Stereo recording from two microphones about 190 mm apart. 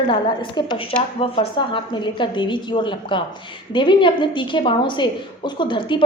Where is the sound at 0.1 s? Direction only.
25° left (ahead or behind).